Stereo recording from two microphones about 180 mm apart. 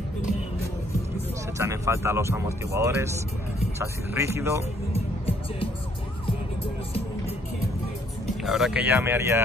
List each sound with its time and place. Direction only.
1.6 s speech: 15° right (ahead or behind)
4.9 s music: 30° left (ahead or behind)
8.5 s speech: centre (ahead or behind)